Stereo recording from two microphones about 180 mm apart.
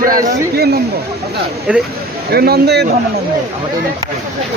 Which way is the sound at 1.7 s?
5° right (ahead or behind).